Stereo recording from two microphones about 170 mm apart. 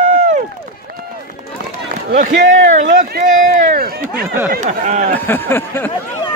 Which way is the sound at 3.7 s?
60° right (ahead or behind).